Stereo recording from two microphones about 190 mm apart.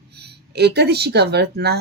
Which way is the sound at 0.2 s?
60° right (ahead or behind).